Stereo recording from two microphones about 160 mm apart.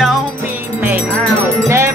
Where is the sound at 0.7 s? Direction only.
10° right (ahead or behind).